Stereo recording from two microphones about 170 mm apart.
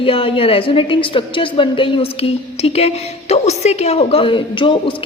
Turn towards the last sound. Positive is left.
turn(degrees=30)  # may be behind; listen again after turning